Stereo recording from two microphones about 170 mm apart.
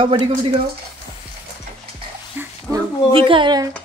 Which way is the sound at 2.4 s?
10° right (ahead or behind).